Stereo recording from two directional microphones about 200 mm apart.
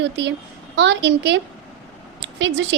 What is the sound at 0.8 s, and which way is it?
Speech, 60° right (ahead or behind).